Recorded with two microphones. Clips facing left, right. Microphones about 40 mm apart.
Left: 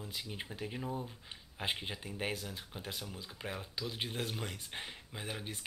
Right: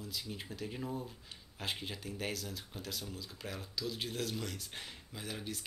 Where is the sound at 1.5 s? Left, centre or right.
Left.